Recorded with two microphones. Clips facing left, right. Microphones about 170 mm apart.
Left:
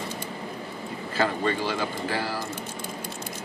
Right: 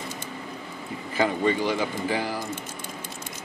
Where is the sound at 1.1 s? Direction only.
15° right (ahead or behind).